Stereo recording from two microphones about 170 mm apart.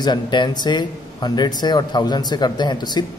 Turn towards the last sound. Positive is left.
turn(degrees=25)  # may be behind; listen again after turning